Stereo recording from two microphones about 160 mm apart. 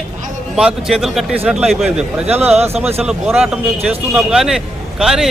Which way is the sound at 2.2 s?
40° right (ahead or behind).